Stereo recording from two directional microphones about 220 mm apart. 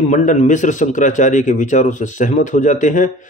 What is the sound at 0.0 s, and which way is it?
Speech, 35° left (ahead or behind).